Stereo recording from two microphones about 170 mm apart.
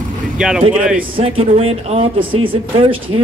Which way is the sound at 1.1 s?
35° right (ahead or behind).